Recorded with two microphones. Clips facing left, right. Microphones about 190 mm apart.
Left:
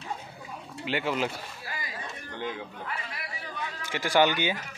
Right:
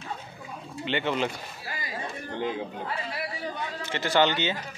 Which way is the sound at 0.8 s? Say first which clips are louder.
Right 1 dB; 5° left (ahead or behind).